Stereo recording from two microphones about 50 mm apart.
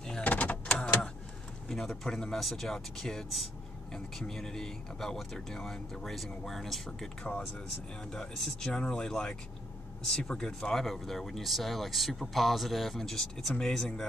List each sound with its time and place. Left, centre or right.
0.2 s power windows: left
0.7 s vehicle: centre
1.7 s speech: centre
8.6 s speech: centre